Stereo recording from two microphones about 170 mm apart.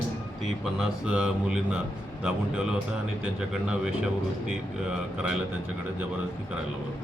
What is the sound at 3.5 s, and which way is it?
Speech, 5° right (ahead or behind).